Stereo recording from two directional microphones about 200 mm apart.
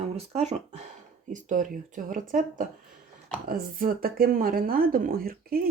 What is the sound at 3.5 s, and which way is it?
Speech, 45° right (ahead or behind).